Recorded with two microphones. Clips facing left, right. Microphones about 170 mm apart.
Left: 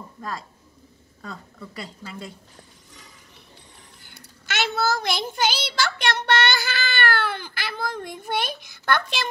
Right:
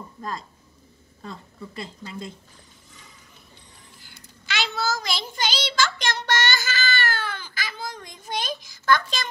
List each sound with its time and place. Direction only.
4.0 s child singing: 55° left (ahead or behind)